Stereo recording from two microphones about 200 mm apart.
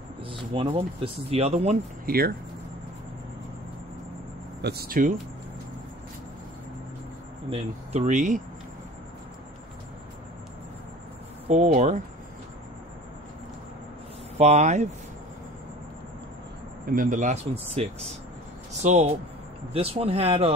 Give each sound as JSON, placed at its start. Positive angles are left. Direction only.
{"t": 0.3, "sound": "speech", "side_deg": -25}
{"t": 4.6, "sound": "speech", "side_deg": -55}
{"t": 7.4, "sound": "speech", "side_deg": -30}
{"t": 11.4, "sound": "speech", "side_deg": -35}
{"t": 14.4, "sound": "speech", "side_deg": -35}
{"t": 16.9, "sound": "speech", "side_deg": -40}